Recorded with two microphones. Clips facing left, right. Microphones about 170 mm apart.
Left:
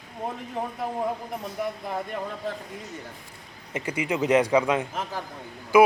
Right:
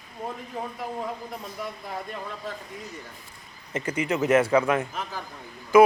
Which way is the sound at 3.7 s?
10° left (ahead or behind).